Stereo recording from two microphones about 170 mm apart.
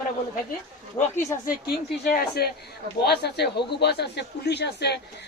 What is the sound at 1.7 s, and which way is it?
Speech, 60° left (ahead or behind).